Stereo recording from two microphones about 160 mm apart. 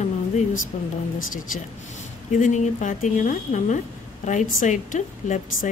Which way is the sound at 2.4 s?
50° left (ahead or behind).